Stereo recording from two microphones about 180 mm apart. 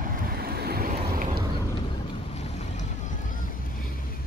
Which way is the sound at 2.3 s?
40° left (ahead or behind).